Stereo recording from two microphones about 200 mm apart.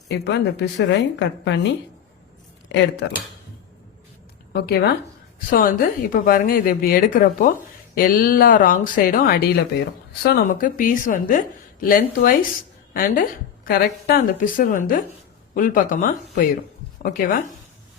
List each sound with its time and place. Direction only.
0.1 s a woman's voice: 55° left (ahead or behind)
2.6 s speech: 60° left (ahead or behind)
4.5 s a woman's voice: 55° left (ahead or behind)